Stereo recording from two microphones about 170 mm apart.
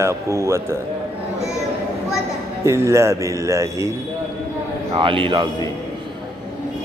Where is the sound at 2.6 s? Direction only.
15° right (ahead or behind).